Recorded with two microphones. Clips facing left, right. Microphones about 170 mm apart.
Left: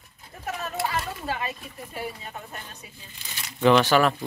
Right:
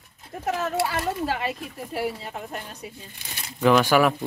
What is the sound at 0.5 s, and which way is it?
Children playing, 90° right.